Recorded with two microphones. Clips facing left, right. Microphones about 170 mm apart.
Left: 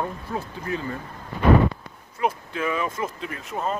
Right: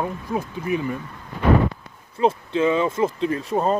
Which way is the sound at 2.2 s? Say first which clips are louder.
Right 6 dB; 25° right (ahead or behind).